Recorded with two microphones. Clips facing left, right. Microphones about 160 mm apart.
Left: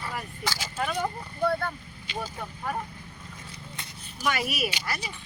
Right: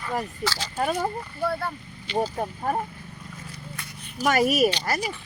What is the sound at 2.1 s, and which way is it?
Speech, 40° right (ahead or behind).